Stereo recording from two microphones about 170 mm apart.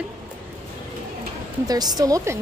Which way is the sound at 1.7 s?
25° right (ahead or behind).